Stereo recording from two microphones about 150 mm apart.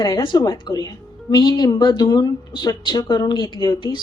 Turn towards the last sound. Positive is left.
turn(degrees=30)  # may be behind; listen again after turning